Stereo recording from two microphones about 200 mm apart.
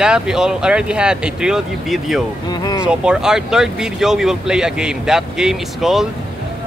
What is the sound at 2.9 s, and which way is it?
Speech, 5° right (ahead or behind).